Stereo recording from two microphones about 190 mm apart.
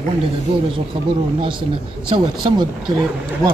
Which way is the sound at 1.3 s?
25° right (ahead or behind).